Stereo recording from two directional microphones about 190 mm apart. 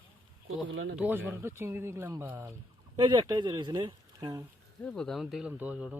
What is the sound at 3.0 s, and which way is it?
Speech, 25° right (ahead or behind).